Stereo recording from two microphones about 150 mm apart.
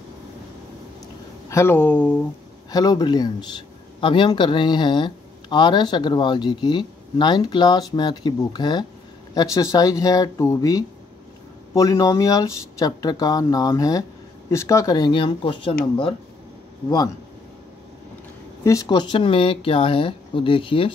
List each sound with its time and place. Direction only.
1.5 s speech: 15° left (ahead or behind)
2.7 s speech: 25° left (ahead or behind)
18.6 s speech: 20° left (ahead or behind)